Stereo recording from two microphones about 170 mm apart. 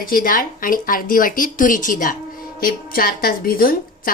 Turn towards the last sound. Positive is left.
turn(degrees=55)  # may be behind; listen again after turning